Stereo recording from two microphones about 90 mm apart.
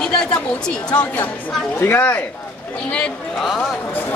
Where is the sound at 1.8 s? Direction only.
20° left (ahead or behind).